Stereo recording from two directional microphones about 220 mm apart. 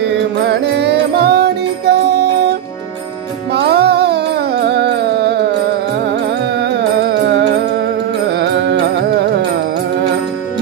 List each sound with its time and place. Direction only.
0.4 s music: 50° right (ahead or behind)
3.5 s music: 45° right (ahead or behind)
6.6 s music: 50° right (ahead or behind)